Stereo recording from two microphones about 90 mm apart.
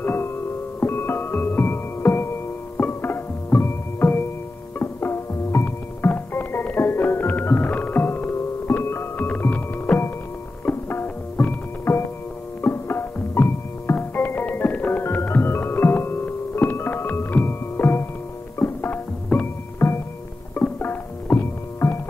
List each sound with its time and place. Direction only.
0.0 s music: 25° left (ahead or behind)